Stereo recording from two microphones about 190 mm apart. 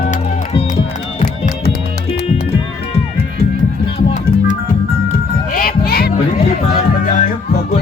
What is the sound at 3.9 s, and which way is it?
Music, 40° left (ahead or behind).